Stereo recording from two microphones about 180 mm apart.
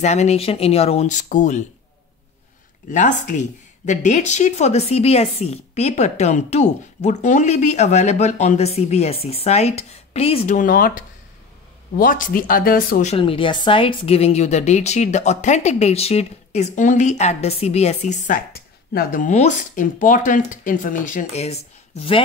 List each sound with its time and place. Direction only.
0.0 s speech: 40° left (ahead or behind)
2.9 s speech: 45° left (ahead or behind)
10.5 s speech: 50° left (ahead or behind)
13.1 s speech: 30° left (ahead or behind)